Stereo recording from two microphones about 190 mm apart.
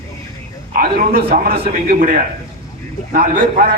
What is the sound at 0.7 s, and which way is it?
A man's voice, 50° right (ahead or behind).